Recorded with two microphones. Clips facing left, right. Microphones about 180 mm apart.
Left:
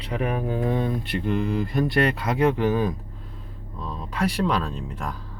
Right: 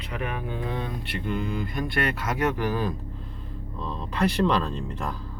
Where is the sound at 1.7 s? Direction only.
30° left (ahead or behind).